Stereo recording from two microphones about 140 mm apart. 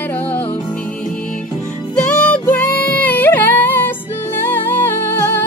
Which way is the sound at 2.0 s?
10° left (ahead or behind).